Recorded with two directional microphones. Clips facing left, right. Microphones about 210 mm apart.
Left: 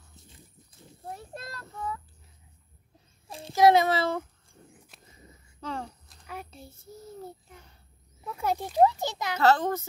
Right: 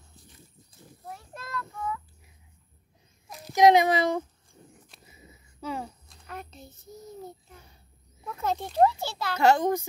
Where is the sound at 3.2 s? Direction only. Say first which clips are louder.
Left 3 dB; 30° left (ahead or behind).